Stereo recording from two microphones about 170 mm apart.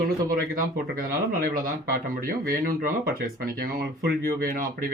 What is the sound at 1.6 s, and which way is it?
Speech, 55° right (ahead or behind).